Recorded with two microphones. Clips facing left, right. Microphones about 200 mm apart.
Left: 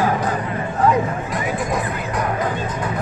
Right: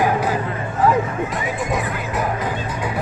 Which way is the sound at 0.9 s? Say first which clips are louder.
Even; centre (ahead or behind).